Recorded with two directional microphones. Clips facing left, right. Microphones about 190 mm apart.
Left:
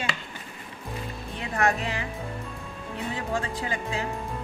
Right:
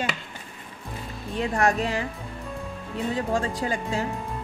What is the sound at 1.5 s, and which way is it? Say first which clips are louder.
Speech: right 2 dB; 40° right (ahead or behind).